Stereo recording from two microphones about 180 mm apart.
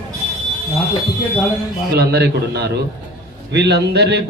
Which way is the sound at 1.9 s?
60° right (ahead or behind).